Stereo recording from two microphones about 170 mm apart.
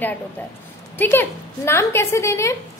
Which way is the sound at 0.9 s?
10° left (ahead or behind).